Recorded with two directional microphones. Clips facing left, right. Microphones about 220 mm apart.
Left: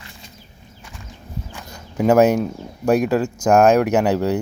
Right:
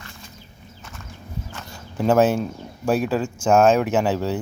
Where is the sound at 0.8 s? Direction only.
15° left (ahead or behind).